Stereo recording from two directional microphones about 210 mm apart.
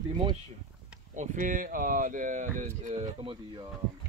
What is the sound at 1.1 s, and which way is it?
Speech, 40° right (ahead or behind).